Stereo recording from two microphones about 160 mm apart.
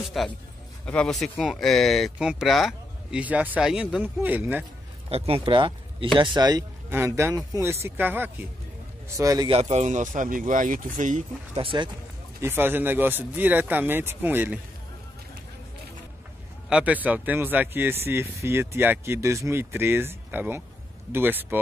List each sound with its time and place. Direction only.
0.2 s speech: centre (ahead or behind)
5.1 s speech: 35° right (ahead or behind)
6.9 s speech: 15° right (ahead or behind)
9.5 s speech: 45° right (ahead or behind)
11.5 s speech: 30° right (ahead or behind)
12.4 s speech: 15° right (ahead or behind)
16.6 s speech: 5° right (ahead or behind)